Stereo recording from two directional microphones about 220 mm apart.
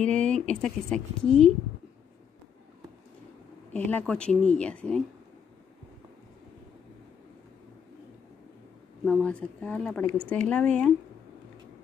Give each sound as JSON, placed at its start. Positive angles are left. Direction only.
{"t": 0.0, "sound": "a woman's voice", "side_deg": 5}
{"t": 3.7, "sound": "a woman's voice", "side_deg": 5}
{"t": 9.0, "sound": "a woman's voice", "side_deg": 5}